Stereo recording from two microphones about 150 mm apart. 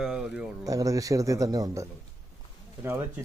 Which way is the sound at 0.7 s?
25° right (ahead or behind).